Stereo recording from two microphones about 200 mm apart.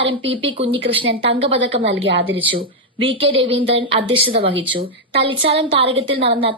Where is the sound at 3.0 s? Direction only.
25° right (ahead or behind).